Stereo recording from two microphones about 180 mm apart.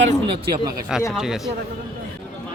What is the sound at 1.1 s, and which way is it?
Speech, centre (ahead or behind).